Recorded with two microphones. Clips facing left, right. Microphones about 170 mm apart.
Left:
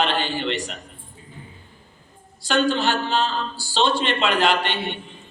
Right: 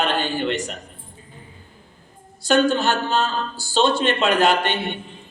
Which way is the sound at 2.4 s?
45° right (ahead or behind).